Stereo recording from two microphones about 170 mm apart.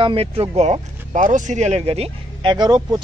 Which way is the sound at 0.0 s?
30° right (ahead or behind).